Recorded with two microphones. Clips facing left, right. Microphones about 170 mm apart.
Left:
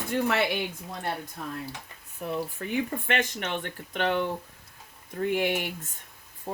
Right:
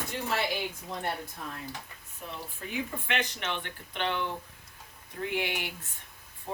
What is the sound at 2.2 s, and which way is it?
Speech, 55° left (ahead or behind).